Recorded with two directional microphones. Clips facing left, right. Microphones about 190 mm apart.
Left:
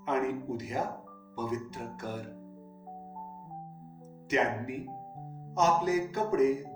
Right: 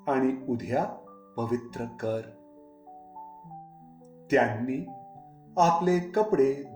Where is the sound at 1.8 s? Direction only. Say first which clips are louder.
Right 6 dB; 50° right (ahead or behind).